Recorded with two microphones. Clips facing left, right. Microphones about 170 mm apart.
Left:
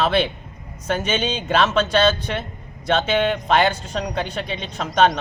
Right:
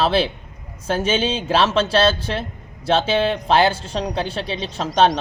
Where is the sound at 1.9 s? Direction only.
5° right (ahead or behind).